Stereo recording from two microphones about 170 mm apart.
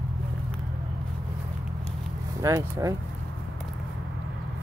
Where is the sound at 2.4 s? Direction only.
20° right (ahead or behind).